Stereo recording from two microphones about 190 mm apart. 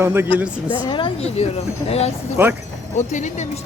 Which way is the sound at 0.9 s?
25° left (ahead or behind).